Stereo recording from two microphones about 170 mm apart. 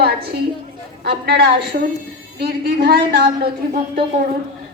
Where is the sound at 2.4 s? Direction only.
65° right (ahead or behind).